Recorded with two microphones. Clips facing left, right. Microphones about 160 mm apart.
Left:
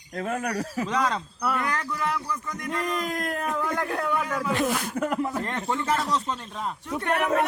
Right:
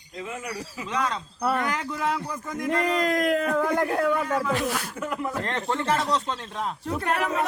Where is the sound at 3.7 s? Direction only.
30° right (ahead or behind).